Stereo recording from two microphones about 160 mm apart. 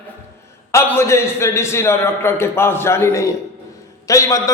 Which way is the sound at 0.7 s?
15° left (ahead or behind).